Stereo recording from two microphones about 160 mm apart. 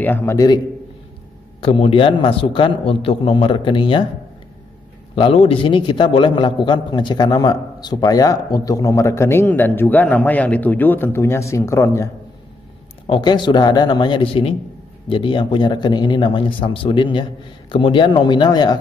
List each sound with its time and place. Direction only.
0.0 s a man's voice: 10° left (ahead or behind)
1.6 s a man's voice: 35° left (ahead or behind)
5.1 s a man's voice: 35° left (ahead or behind); by 12.1 s 20° left (ahead or behind)
13.0 s a man's voice: 30° left (ahead or behind)